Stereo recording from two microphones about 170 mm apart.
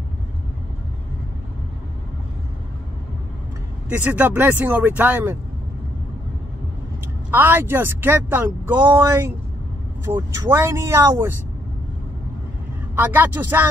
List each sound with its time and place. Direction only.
4.0 s speech: 10° right (ahead or behind)
7.2 s speech: 15° right (ahead or behind)
12.9 s speech: 10° right (ahead or behind)